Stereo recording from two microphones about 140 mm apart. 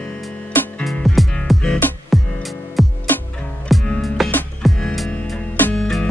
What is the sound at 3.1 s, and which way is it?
Music, 15° left (ahead or behind).